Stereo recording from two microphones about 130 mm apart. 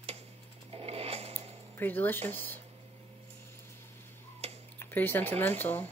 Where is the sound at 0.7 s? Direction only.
50° right (ahead or behind).